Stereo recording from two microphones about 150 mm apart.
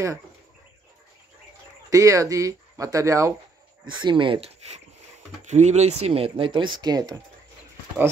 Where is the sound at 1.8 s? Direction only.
20° right (ahead or behind).